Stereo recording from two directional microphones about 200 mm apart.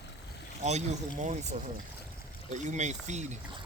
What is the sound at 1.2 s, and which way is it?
Speech, 35° right (ahead or behind).